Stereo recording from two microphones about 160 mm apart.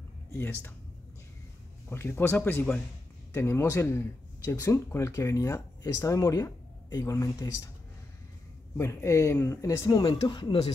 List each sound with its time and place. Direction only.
0.3 s speech: 15° left (ahead or behind)
1.9 s speech: 15° left (ahead or behind)
8.7 s speech: 15° left (ahead or behind)